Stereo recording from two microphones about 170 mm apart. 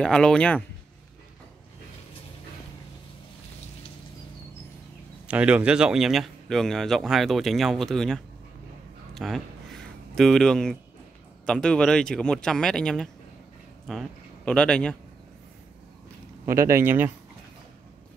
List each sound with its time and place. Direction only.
0.0 s speech: 5° left (ahead or behind)
5.3 s speech: 5° right (ahead or behind)
9.1 s a sound: centre (ahead or behind)
11.4 s speech: 5° left (ahead or behind)
16.4 s speech: 15° right (ahead or behind)